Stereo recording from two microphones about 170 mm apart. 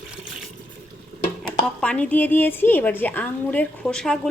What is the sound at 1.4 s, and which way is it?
A woman's voice, 5° left (ahead or behind).